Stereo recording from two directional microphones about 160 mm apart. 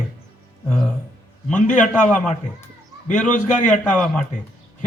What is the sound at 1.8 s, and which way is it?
Speech, 10° left (ahead or behind).